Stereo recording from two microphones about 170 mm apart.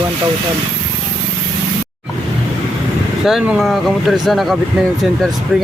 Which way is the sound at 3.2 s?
5° right (ahead or behind).